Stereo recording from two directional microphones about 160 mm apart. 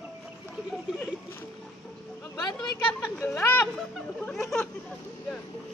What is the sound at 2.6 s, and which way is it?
Speech, 5° left (ahead or behind).